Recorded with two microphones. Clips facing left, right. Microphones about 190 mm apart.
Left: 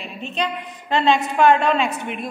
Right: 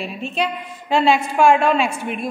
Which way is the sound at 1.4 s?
10° right (ahead or behind).